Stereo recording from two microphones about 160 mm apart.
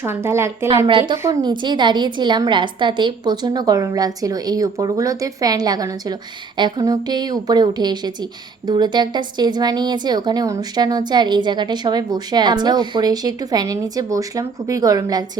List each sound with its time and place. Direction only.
0.0 s a woman's voice: 15° right (ahead or behind)
0.9 s a woman's voice: 30° right (ahead or behind)
1.1 s a woman's voice: 20° right (ahead or behind)